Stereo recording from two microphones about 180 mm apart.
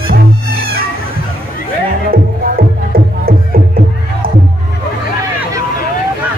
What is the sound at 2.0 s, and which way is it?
Music, 55° right (ahead or behind).